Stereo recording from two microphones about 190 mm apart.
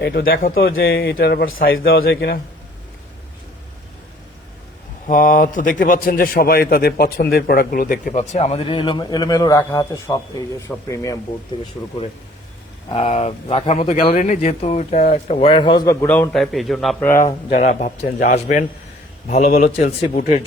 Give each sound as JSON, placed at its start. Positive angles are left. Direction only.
{"t": 0.0, "sound": "a man's voice", "side_deg": 50}
{"t": 5.0, "sound": "a man's voice", "side_deg": 45}
{"t": 12.9, "sound": "speech", "side_deg": 25}
{"t": 17.2, "sound": "a man's voice", "side_deg": 35}